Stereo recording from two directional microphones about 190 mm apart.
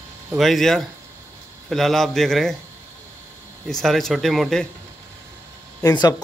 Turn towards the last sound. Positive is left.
turn(degrees=20)  # may be behind; listen again after turning